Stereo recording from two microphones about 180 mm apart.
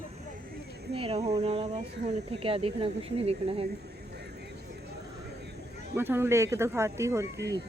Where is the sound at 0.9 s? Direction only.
35° right (ahead or behind).